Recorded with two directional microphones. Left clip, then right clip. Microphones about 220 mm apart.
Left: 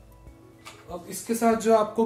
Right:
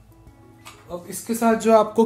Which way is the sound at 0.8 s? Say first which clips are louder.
Right 2 dB; 30° right (ahead or behind).